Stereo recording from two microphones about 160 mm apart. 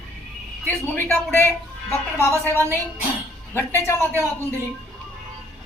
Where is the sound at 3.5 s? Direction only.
15° left (ahead or behind).